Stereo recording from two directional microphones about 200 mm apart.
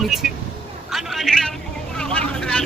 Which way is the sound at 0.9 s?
Centre (ahead or behind).